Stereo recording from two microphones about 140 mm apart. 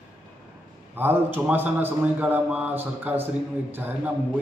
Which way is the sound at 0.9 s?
15° right (ahead or behind).